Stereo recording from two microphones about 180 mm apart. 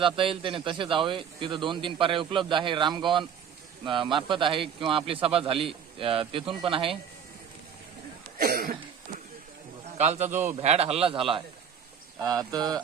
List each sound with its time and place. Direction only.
0.0 s a man's voice: 30° right (ahead or behind)
8.4 s cough: 55° right (ahead or behind)
10.0 s a man's voice: 40° right (ahead or behind)
10.2 s a man's voice: 10° right (ahead or behind)
10.6 s a man's voice: 35° right (ahead or behind)